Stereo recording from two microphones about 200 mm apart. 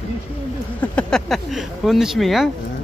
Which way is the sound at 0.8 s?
5° left (ahead or behind).